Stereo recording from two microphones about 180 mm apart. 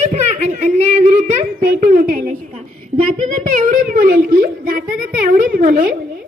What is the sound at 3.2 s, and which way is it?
A woman's voice, 45° right (ahead or behind).